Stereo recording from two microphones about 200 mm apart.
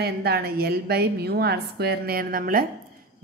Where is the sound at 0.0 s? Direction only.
50° right (ahead or behind).